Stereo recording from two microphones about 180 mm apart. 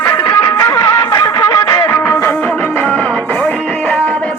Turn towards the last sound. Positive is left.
turn(degrees=5)  # may be behind; listen again after turning